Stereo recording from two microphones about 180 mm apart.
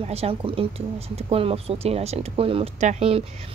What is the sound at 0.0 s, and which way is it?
A woman's voice, 35° right (ahead or behind).